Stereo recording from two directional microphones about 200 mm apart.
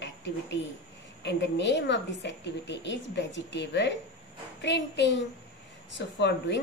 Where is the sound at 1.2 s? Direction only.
60° left (ahead or behind).